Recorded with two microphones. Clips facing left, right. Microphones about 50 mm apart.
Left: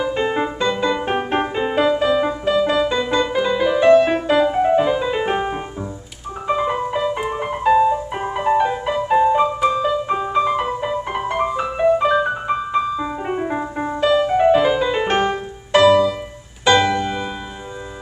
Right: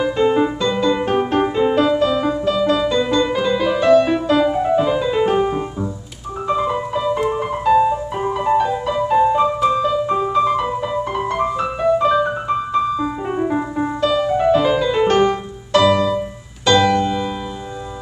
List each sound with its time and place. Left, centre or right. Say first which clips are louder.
0.1 s music: right 4 dB; centre